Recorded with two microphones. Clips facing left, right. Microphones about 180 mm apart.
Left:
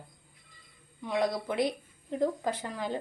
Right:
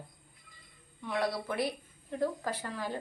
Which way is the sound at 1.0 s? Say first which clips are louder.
Left 3 dB; 15° left (ahead or behind).